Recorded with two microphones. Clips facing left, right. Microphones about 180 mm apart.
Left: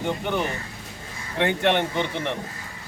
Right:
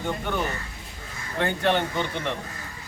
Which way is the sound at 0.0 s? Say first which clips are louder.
Left 2 dB; 20° left (ahead or behind).